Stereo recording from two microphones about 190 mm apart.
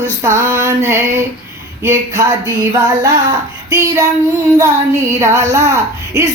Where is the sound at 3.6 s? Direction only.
15° right (ahead or behind).